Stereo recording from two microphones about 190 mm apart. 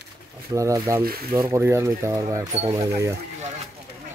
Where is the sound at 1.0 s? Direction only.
50° right (ahead or behind).